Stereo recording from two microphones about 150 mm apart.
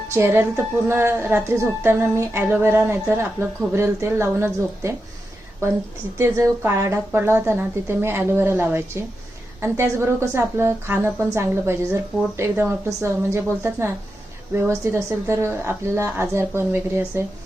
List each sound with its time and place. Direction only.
0.1 s a woman's voice: 15° right (ahead or behind)
6.1 s a woman's voice: 20° right (ahead or behind)